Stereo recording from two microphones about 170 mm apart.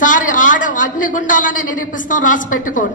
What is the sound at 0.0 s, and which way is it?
A woman's voice, 50° left (ahead or behind).